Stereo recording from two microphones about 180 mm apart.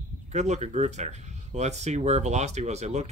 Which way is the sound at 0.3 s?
40° right (ahead or behind).